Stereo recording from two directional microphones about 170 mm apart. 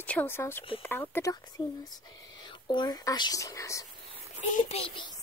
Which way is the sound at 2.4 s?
25° left (ahead or behind).